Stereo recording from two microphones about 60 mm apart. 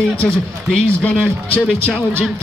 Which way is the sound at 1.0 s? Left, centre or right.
Left.